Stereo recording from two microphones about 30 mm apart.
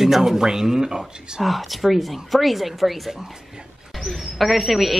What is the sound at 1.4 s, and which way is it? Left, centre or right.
A woman's voice, centre.